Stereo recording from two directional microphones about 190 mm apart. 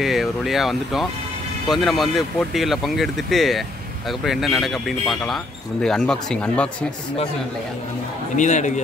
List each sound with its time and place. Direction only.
0.0 s speech: centre (ahead or behind)
8.4 s speech: 40° left (ahead or behind)